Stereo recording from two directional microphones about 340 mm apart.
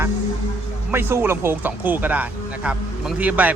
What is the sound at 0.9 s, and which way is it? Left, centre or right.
Speech, centre.